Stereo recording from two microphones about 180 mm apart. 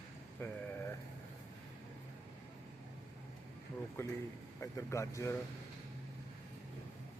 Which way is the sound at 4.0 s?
15° left (ahead or behind).